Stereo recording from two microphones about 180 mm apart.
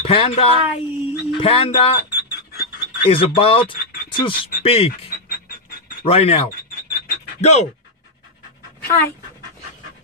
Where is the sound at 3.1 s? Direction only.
30° left (ahead or behind).